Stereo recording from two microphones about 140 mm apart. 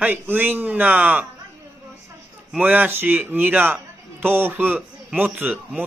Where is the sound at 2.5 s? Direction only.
15° right (ahead or behind).